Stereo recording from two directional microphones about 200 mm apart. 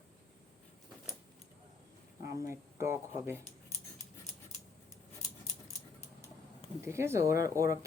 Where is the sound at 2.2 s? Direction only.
15° right (ahead or behind).